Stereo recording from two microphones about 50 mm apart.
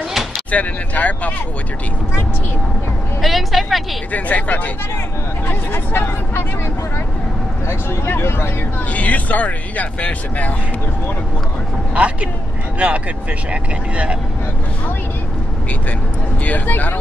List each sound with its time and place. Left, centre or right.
0.5 s speech: left
3.2 s speech: centre
4.1 s speech: left
5.5 s speech: left
7.6 s speech: left
8.9 s speech: left
11.9 s speech: right
16.4 s speech: left